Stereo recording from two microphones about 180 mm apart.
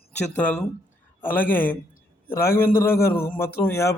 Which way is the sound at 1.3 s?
50° left (ahead or behind).